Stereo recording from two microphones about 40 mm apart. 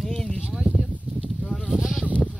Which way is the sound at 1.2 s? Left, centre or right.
Centre.